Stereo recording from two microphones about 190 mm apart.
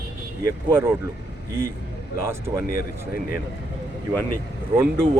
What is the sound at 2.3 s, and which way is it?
Speech, 15° right (ahead or behind).